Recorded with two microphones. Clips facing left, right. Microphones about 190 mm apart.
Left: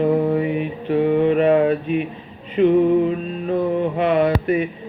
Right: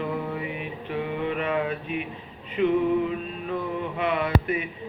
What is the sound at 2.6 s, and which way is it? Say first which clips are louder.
Music: left 7 dB; 40° left (ahead or behind).